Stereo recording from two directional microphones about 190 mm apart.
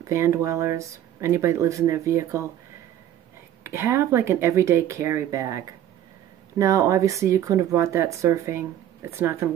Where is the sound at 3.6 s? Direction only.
15° right (ahead or behind).